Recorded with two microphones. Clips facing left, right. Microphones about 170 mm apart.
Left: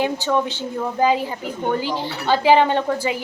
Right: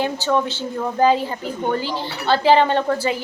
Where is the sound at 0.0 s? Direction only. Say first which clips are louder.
Even; 15° left (ahead or behind).